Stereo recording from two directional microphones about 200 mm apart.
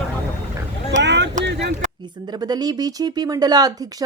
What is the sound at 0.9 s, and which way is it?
Speech, 60° right (ahead or behind).